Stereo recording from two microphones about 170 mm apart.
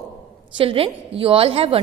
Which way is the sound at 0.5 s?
30° right (ahead or behind).